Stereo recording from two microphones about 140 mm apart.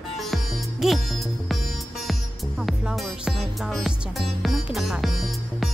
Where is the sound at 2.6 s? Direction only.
5° right (ahead or behind).